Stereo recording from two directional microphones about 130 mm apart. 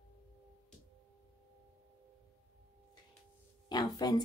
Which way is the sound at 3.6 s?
30° left (ahead or behind).